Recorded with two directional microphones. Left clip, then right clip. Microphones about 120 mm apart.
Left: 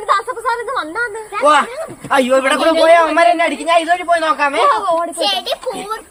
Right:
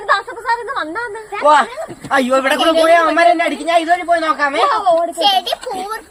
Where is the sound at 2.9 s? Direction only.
20° left (ahead or behind).